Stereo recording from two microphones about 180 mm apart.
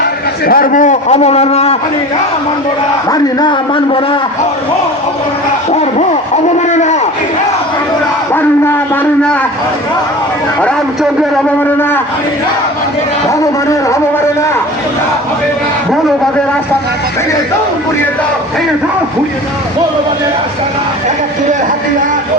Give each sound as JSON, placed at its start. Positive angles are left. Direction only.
{"t": 0.0, "sound": "a man's voice", "side_deg": 55}
{"t": 3.1, "sound": "a man's voice", "side_deg": 25}
{"t": 5.7, "sound": "speech", "side_deg": 40}
{"t": 8.3, "sound": "a sound", "side_deg": 10}
{"t": 13.4, "sound": "speech", "side_deg": 20}